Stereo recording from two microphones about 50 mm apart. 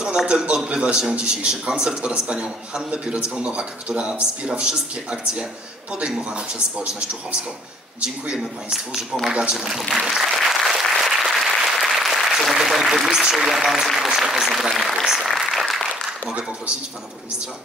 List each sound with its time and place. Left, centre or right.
0.0 s a man's voice: centre
9.1 s a man's voice: centre
9.5 s applause: centre
12.6 s a sound: centre
13.2 s a man's voice: centre